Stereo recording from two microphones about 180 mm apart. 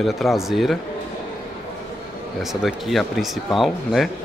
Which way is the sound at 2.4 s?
Centre (ahead or behind).